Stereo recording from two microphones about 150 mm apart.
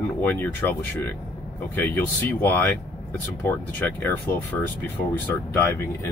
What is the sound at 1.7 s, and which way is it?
Speech, 10° left (ahead or behind).